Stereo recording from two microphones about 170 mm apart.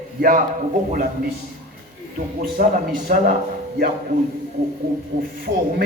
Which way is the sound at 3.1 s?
50° right (ahead or behind).